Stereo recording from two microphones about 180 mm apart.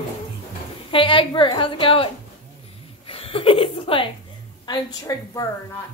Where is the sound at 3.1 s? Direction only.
30° left (ahead or behind).